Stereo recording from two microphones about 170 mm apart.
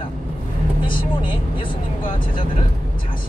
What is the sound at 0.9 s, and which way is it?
Speech, 30° left (ahead or behind).